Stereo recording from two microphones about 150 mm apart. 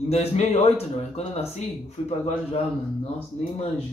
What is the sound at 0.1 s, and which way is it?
Speech, 45° left (ahead or behind).